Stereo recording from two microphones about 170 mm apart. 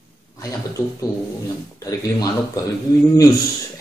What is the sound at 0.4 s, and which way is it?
Speech, 20° left (ahead or behind).